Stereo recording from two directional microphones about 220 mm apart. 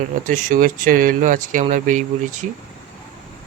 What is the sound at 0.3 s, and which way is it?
Speech, 35° right (ahead or behind).